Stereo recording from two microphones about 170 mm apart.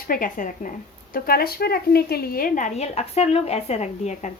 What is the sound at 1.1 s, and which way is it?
A woman's voice, 65° left (ahead or behind).